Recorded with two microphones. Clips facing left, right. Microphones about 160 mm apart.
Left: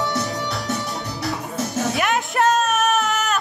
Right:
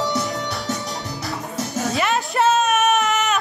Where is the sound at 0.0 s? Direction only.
20° right (ahead or behind).